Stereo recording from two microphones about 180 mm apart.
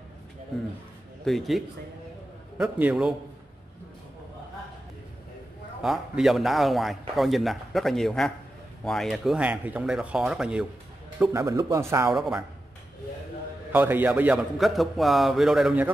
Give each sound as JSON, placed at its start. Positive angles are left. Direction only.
{"t": 1.2, "sound": "a man's voice", "side_deg": 0}
{"t": 5.8, "sound": "a man's voice", "side_deg": -5}
{"t": 11.3, "sound": "speech", "side_deg": -15}
{"t": 12.1, "sound": "a man's voice", "side_deg": 0}
{"t": 13.7, "sound": "a man's voice", "side_deg": -10}